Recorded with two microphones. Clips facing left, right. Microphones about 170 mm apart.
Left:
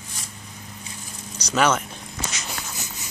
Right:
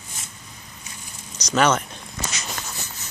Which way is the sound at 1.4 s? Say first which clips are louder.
Right 1 dB; 5° left (ahead or behind).